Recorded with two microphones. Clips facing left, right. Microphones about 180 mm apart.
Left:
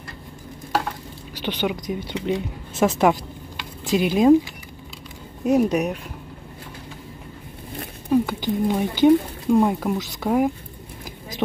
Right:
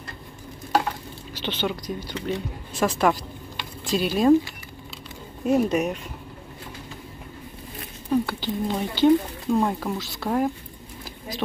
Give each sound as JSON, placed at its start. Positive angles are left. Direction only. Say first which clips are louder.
{"t": 1.4, "sound": "speech", "louder": "left 3 dB", "side_deg": 15}
{"t": 5.4, "sound": "speech", "louder": "left 2 dB", "side_deg": 5}
{"t": 8.1, "sound": "speech", "louder": "left 4 dB", "side_deg": 15}